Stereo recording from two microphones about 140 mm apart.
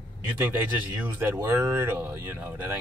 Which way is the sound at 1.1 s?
15° right (ahead or behind).